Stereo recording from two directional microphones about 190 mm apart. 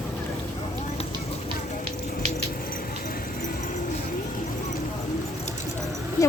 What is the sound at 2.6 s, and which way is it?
Keys jangling, 50° left (ahead or behind).